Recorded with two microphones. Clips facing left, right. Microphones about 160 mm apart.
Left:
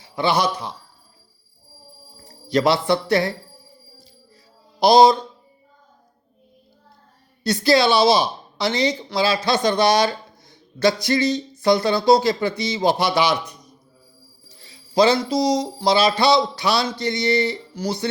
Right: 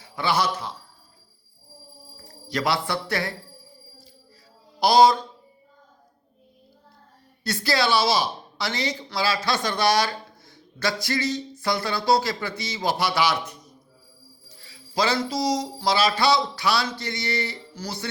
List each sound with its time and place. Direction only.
0.0 s a man's voice: 20° left (ahead or behind)
2.1 s speech: 25° left (ahead or behind)
4.8 s speech: 20° left (ahead or behind)
7.4 s speech: 20° left (ahead or behind)